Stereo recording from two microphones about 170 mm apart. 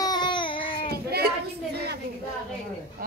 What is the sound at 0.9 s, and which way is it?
Child singing, 70° right (ahead or behind).